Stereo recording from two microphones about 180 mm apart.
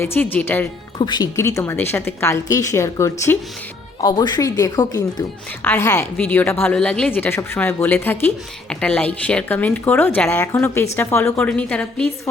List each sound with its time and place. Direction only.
0.0 s a woman's voice: 10° left (ahead or behind)
0.9 s a woman's voice: 25° left (ahead or behind); by 12.0 s 5° left (ahead or behind)